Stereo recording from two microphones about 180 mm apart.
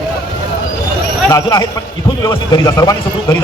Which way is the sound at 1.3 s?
20° left (ahead or behind).